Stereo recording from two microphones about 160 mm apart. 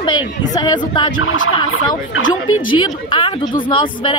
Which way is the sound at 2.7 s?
30° left (ahead or behind).